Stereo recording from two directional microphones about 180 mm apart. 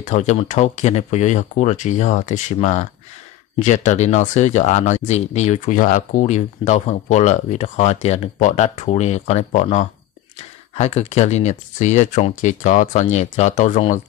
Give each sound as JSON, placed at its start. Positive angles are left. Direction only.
{"t": 0.0, "sound": "speech", "side_deg": 40}